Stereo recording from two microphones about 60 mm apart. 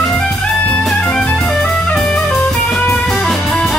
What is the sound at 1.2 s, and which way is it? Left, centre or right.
Music, centre.